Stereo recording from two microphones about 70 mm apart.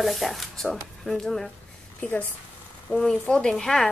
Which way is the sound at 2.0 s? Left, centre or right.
Left.